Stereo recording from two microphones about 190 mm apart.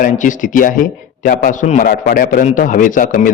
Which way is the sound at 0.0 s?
45° left (ahead or behind).